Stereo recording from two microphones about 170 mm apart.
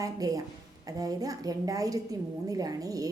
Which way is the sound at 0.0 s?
20° right (ahead or behind).